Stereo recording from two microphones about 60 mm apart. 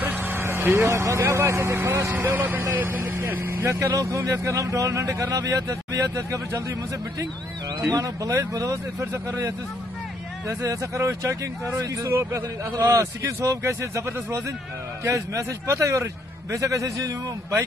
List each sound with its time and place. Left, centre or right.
0.0 s vehicle: right
0.8 s speech: right
2.3 s speech: right
3.9 s speech: right
7.8 s speech: right
9.1 s speech: right
10.7 s speech: right
13.4 s speech: right